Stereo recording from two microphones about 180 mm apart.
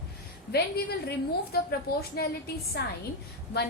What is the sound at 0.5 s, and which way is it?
A woman's voice, 60° left (ahead or behind).